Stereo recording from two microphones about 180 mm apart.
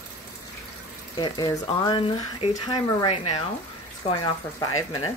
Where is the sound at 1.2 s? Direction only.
25° left (ahead or behind).